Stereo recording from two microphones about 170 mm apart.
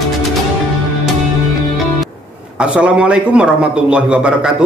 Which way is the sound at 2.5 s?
5° right (ahead or behind).